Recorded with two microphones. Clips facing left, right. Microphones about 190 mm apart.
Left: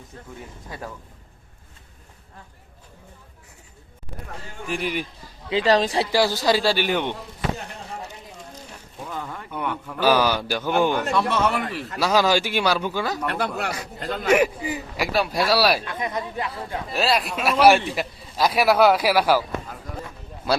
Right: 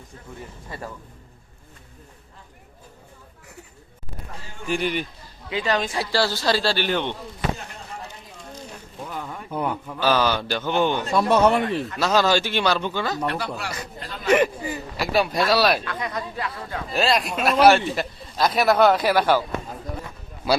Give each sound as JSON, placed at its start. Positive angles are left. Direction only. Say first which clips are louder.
{"t": 0.7, "sound": "a man's voice", "louder": "even", "side_deg": 0}
{"t": 4.6, "sound": "a man's voice", "louder": "right 2 dB", "side_deg": 0}
{"t": 5.5, "sound": "speech", "louder": "left 5 dB", "side_deg": 30}
{"t": 6.1, "sound": "a man's voice", "louder": "even", "side_deg": 15}
{"t": 9.5, "sound": "a man's voice", "louder": "right 3 dB", "side_deg": -35}
{"t": 10.0, "sound": "a man's voice", "louder": "left 2 dB", "side_deg": 10}
{"t": 11.1, "sound": "a man's voice", "louder": "right 3 dB", "side_deg": -40}
{"t": 11.3, "sound": "speech", "louder": "right 5 dB", "side_deg": -20}
{"t": 11.9, "sound": "a man's voice", "louder": "left 1 dB", "side_deg": 10}
{"t": 13.2, "sound": "speech", "louder": "left 1 dB", "side_deg": 55}
{"t": 14.3, "sound": "a man's voice", "louder": "even", "side_deg": 10}
{"t": 15.1, "sound": "a man's voice", "louder": "right 1 dB", "side_deg": 5}
{"t": 15.8, "sound": "speech", "louder": "left 1 dB", "side_deg": 20}
{"t": 16.9, "sound": "a man's voice", "louder": "right 1 dB", "side_deg": 0}